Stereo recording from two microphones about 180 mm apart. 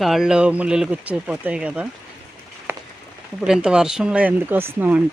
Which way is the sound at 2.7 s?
10° right (ahead or behind).